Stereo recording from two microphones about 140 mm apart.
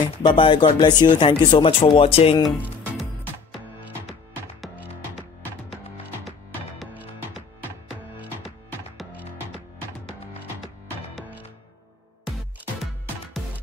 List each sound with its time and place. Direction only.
0.2 s speech: 35° left (ahead or behind)
6.9 s music: 10° right (ahead or behind)